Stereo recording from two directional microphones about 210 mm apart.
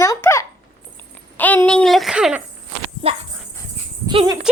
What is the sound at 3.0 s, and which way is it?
A child's voice, 30° right (ahead or behind).